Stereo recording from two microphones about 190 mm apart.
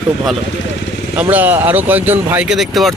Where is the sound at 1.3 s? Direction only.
10° right (ahead or behind).